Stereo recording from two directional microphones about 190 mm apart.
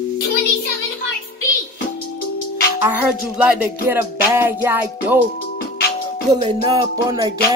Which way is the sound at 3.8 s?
10° right (ahead or behind).